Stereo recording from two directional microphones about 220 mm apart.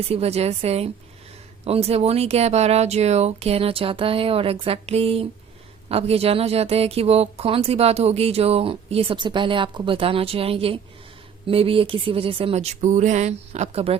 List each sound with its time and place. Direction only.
0.1 s speech: 30° right (ahead or behind)